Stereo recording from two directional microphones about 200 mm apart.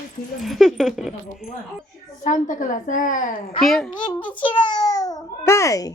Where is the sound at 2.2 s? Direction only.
40° left (ahead or behind).